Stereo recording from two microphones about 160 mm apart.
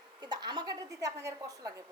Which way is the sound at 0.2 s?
25° right (ahead or behind).